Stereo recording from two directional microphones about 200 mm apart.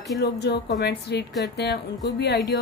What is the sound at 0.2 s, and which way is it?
A woman's voice, 55° left (ahead or behind).